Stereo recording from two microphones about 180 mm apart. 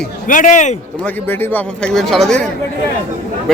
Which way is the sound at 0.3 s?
45° left (ahead or behind).